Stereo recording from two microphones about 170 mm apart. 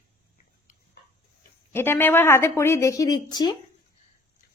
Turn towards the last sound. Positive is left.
turn(degrees=25)  # may be behind; listen again after turning